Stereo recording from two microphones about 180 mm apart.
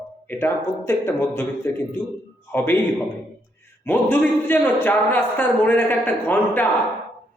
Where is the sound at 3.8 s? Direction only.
10° left (ahead or behind).